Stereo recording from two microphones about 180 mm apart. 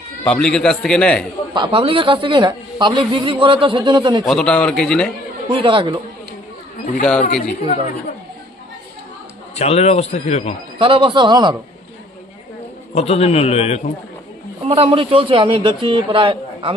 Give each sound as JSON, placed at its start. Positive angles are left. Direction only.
{"t": 0.2, "sound": "a man's voice", "side_deg": 5}
{"t": 1.5, "sound": "a man's voice", "side_deg": -30}
{"t": 4.3, "sound": "a man's voice", "side_deg": 5}
{"t": 5.5, "sound": "a man's voice", "side_deg": -30}
{"t": 7.0, "sound": "a man's voice", "side_deg": 5}
{"t": 9.6, "sound": "a man's voice", "side_deg": 35}
{"t": 10.8, "sound": "a man's voice", "side_deg": -30}
{"t": 12.9, "sound": "a man's voice", "side_deg": 35}
{"t": 14.6, "sound": "a man's voice", "side_deg": -30}